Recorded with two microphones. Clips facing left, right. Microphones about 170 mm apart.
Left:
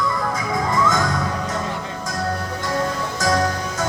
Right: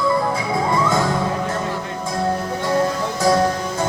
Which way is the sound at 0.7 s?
30° right (ahead or behind).